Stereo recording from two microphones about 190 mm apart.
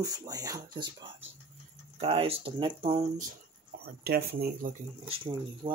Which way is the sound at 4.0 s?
55° right (ahead or behind).